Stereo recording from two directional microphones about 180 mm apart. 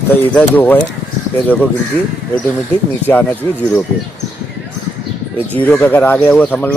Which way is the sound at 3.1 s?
10° left (ahead or behind).